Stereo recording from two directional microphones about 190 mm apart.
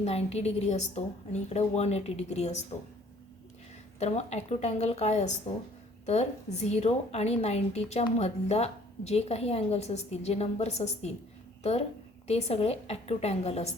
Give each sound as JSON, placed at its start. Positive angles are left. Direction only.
{"t": 0.0, "sound": "a woman's voice", "side_deg": 35}
{"t": 4.0, "sound": "a woman's voice", "side_deg": 35}
{"t": 12.3, "sound": "a woman's voice", "side_deg": 35}